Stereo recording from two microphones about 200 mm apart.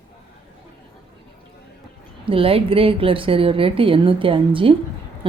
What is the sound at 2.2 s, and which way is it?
A woman's voice, 25° right (ahead or behind).